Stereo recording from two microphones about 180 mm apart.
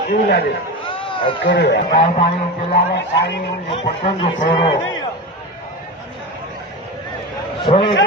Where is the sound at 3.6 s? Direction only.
30° left (ahead or behind).